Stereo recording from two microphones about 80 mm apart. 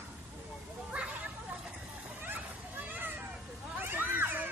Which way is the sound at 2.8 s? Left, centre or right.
Right.